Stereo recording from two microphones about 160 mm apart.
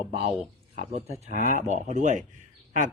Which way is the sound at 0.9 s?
50° right (ahead or behind).